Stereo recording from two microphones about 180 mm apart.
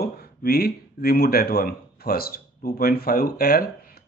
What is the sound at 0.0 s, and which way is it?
Speech, 60° left (ahead or behind).